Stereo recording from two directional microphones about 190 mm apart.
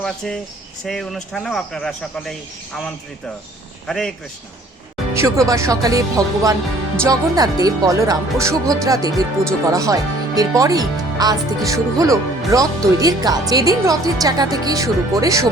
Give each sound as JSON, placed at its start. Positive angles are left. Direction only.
{"t": 0.9, "sound": "speech", "side_deg": 0}
{"t": 5.1, "sound": "speech", "side_deg": -15}